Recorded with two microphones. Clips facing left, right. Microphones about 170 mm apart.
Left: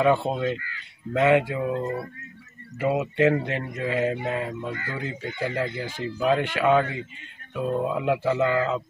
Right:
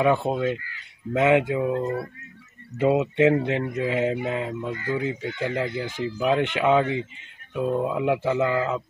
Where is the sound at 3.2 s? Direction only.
15° right (ahead or behind).